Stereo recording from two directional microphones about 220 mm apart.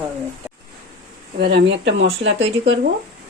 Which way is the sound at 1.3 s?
50° right (ahead or behind).